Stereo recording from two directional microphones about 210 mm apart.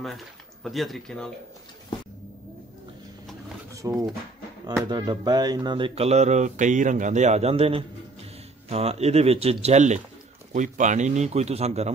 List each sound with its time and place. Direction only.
0.0 s speech: centre (ahead or behind)
3.8 s speech: 15° right (ahead or behind); by 11.9 s 30° right (ahead or behind)